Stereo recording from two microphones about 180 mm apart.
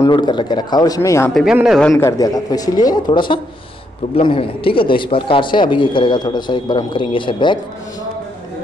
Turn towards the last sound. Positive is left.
turn(degrees=25)  # may be behind; listen again after turning